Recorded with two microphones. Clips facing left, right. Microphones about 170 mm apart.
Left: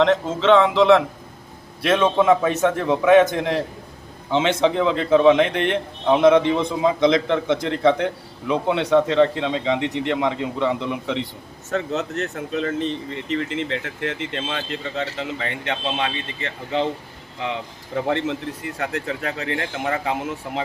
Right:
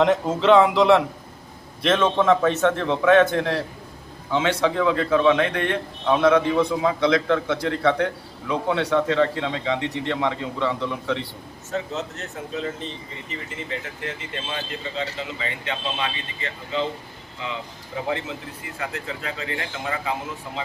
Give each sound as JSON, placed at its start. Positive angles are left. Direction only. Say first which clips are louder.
{"t": 0.0, "sound": "speech", "louder": "left 1 dB", "side_deg": -5}
{"t": 1.8, "sound": "a man's voice", "louder": "left 2 dB", "side_deg": 10}
{"t": 11.7, "sound": "speech", "louder": "left 4 dB", "side_deg": 65}
{"t": 17.4, "sound": "speech", "louder": "left 4 dB", "side_deg": 65}